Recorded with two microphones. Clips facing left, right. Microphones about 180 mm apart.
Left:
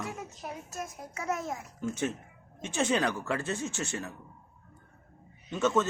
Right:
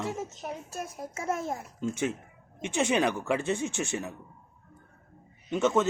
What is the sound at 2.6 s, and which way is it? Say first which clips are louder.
A man's voice: right 2 dB; 15° right (ahead or behind).